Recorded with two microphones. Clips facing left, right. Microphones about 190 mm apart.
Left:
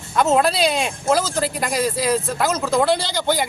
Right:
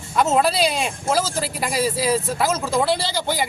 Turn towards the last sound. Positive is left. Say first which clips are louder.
# left 3 dB
turn(degrees=-5)  # may be behind; listen again after turning